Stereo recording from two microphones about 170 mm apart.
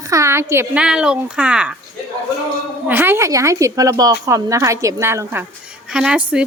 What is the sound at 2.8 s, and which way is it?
A woman's voice, 10° right (ahead or behind).